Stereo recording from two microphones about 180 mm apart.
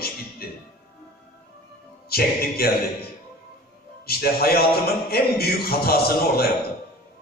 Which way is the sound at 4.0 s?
60° left (ahead or behind).